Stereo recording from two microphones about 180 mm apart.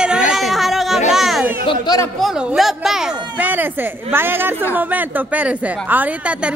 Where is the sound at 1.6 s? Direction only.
20° left (ahead or behind).